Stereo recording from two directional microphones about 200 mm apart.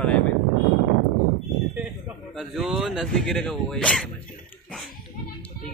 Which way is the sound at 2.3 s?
Centre (ahead or behind).